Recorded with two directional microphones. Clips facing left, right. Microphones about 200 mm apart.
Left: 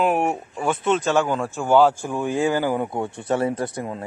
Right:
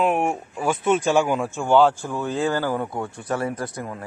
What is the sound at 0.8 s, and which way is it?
Speech, 15° right (ahead or behind).